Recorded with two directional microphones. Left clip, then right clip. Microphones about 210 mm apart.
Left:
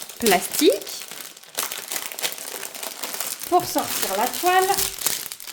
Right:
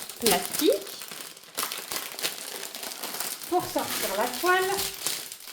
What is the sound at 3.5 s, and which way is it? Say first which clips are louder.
Speech: left 7 dB; 55° left (ahead or behind).